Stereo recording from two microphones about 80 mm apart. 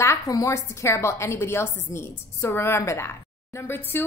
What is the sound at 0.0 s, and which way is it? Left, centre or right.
A woman's voice, left.